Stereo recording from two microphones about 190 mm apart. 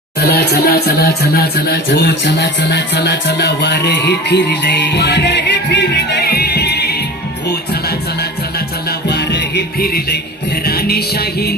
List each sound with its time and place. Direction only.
0.3 s speech: 55° left (ahead or behind)
7.4 s music: 60° left (ahead or behind)
10.5 s speech: 55° left (ahead or behind)